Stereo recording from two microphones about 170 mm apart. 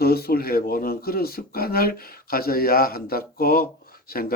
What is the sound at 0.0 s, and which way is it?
Speech, 65° left (ahead or behind).